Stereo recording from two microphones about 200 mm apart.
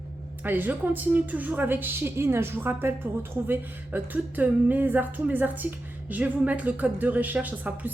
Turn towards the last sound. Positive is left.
turn(degrees=-10)  # may be behind; listen again after turning